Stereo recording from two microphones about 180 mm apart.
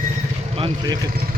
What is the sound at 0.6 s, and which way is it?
Speech, 25° right (ahead or behind).